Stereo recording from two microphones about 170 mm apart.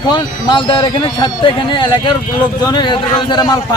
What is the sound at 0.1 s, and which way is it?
Speech, 25° left (ahead or behind).